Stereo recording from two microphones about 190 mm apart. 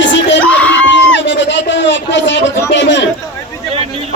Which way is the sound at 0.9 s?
70° left (ahead or behind).